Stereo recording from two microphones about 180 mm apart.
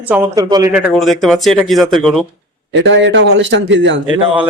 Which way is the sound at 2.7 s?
90° right.